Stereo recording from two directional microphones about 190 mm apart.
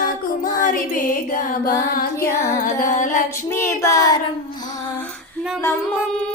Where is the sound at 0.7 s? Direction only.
45° left (ahead or behind).